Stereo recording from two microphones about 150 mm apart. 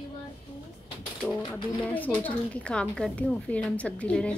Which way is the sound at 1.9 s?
10° left (ahead or behind).